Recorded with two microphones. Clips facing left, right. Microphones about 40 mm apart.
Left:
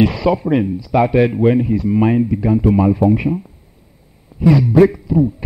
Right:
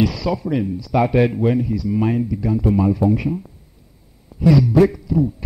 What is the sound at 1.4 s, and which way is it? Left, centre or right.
A man's voice, left.